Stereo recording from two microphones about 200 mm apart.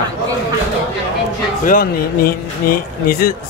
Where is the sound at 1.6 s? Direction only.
45° left (ahead or behind).